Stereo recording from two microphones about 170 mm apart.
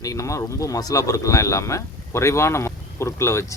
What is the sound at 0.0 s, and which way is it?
Speech, 20° left (ahead or behind).